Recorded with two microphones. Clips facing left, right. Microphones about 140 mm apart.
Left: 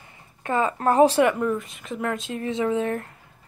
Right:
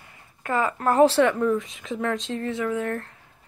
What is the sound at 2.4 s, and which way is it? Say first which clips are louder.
Speech: left 4 dB; 20° left (ahead or behind).